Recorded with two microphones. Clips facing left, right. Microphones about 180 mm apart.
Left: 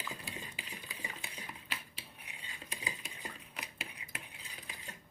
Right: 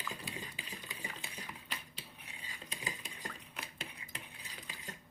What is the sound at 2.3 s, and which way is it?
Cutlery, 15° left (ahead or behind).